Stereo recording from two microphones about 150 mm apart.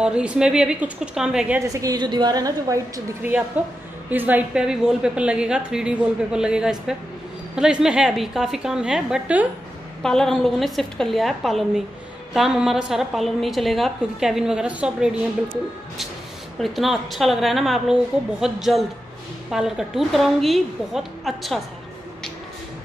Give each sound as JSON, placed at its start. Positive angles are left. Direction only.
{"t": 0.0, "sound": "a woman's voice", "side_deg": -5}
{"t": 1.7, "sound": "a woman's voice", "side_deg": -25}
{"t": 3.2, "sound": "a woman's voice", "side_deg": -10}
{"t": 10.0, "sound": "a woman's voice", "side_deg": 5}
{"t": 16.5, "sound": "a woman's voice", "side_deg": 0}